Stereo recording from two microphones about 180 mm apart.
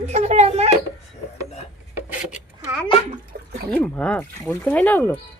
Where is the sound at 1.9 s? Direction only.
5° right (ahead or behind).